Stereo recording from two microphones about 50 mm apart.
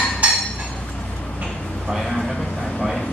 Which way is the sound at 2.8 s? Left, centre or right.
Centre.